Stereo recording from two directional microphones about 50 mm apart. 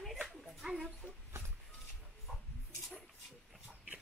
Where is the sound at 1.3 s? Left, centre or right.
Right.